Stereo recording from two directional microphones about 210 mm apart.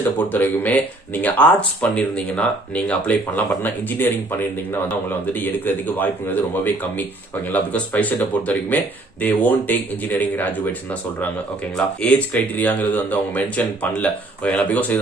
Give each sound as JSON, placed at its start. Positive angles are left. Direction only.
{"t": 0.3, "sound": "speech", "side_deg": 10}
{"t": 11.7, "sound": "speech", "side_deg": 5}